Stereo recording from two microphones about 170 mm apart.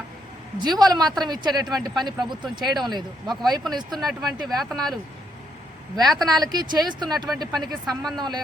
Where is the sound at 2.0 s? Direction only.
25° right (ahead or behind).